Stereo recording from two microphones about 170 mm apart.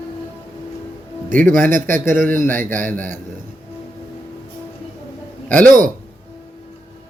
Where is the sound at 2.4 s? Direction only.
10° left (ahead or behind).